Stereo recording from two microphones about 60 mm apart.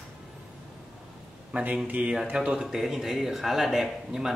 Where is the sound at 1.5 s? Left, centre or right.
Right.